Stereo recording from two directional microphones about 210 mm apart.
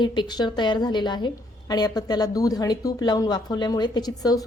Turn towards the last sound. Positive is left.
turn(degrees=20)  # may be behind; listen again after turning